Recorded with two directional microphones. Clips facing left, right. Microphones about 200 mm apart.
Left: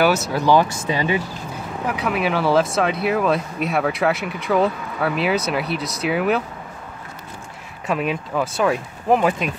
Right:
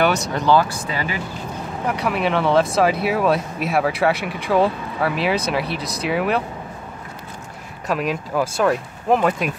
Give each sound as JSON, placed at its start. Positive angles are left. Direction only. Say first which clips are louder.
{"t": 0.0, "sound": "speech", "louder": "left 1 dB", "side_deg": 5}
{"t": 0.8, "sound": "speech", "louder": "left 4 dB", "side_deg": 20}
{"t": 1.9, "sound": "speech", "louder": "right 1 dB", "side_deg": 0}
{"t": 7.8, "sound": "speech", "louder": "even", "side_deg": 0}